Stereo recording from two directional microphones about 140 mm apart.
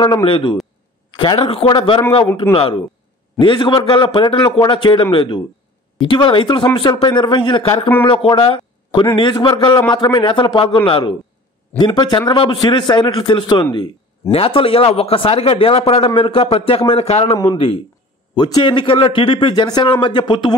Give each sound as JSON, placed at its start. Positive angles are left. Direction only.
{"t": 0.0, "sound": "a man's voice", "side_deg": 35}
{"t": 3.3, "sound": "a man's voice", "side_deg": 35}
{"t": 14.3, "sound": "a man's voice", "side_deg": 40}
{"t": 17.3, "sound": "a man's voice", "side_deg": 25}